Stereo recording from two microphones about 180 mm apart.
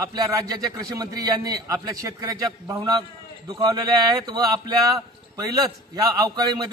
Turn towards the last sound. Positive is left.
turn(degrees=-20)  # may be behind; listen again after turning